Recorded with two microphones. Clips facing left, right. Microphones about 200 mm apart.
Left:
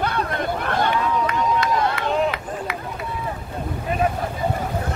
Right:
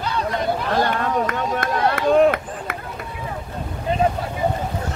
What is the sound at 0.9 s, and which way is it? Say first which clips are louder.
Run: even; 55° right (ahead or behind).